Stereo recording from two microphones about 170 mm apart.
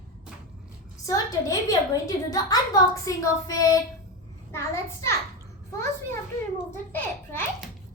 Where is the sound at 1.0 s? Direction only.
20° left (ahead or behind).